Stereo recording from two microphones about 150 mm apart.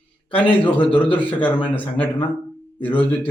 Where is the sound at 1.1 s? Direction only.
10° left (ahead or behind).